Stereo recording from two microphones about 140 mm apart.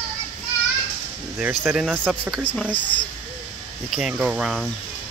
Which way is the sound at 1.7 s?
5° left (ahead or behind).